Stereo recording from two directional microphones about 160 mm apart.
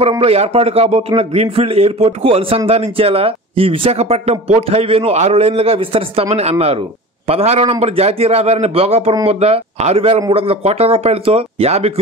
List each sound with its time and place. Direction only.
0.2 s speech: 40° right (ahead or behind)
7.2 s speech: 40° right (ahead or behind)